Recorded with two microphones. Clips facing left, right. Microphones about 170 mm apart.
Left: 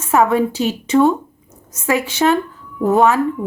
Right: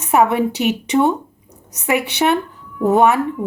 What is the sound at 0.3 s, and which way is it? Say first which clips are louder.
Speech: even; 20° right (ahead or behind).